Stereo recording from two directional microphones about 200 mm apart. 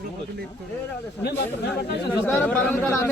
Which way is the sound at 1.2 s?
55° left (ahead or behind).